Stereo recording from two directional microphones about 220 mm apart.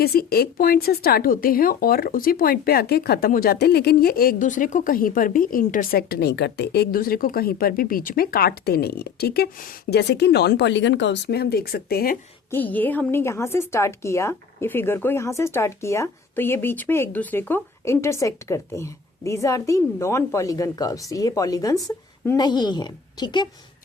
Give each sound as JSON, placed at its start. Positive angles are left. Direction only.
{"t": 0.0, "sound": "speech", "side_deg": 45}
{"t": 12.5, "sound": "a woman's voice", "side_deg": 10}